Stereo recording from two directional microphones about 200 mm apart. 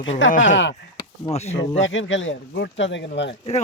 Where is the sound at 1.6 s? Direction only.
70° left (ahead or behind).